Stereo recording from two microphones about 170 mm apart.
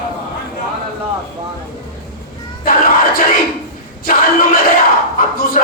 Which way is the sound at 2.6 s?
55° left (ahead or behind).